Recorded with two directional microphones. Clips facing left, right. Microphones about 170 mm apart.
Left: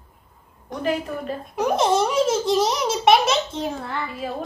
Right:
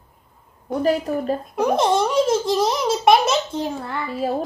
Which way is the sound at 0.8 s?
40° right (ahead or behind).